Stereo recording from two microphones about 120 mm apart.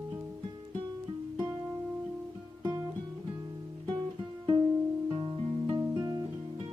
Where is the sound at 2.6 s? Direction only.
35° right (ahead or behind).